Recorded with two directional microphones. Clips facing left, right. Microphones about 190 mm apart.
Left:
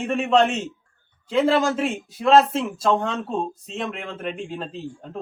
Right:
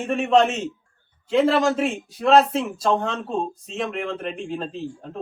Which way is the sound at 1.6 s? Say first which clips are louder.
Right 2 dB; centre (ahead or behind).